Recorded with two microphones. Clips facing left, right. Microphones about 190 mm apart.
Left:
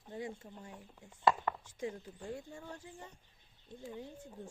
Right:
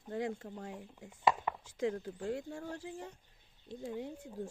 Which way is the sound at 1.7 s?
90° right.